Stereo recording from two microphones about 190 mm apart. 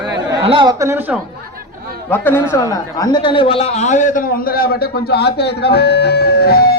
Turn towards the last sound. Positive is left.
turn(degrees=55)  # may be behind; listen again after turning